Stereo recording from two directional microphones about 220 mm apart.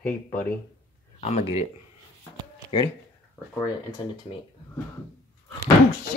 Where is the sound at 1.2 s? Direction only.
30° left (ahead or behind).